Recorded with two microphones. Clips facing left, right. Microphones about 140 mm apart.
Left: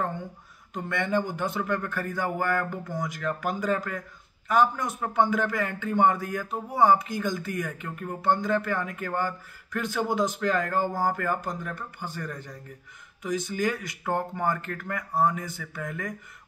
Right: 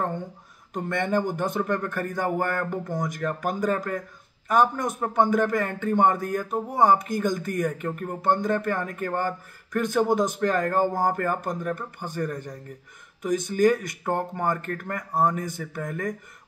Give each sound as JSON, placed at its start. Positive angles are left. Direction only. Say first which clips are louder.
{"t": 0.7, "sound": "a man's voice", "louder": "right 2 dB", "side_deg": -45}